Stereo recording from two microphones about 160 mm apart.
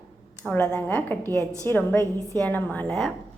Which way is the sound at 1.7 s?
15° left (ahead or behind).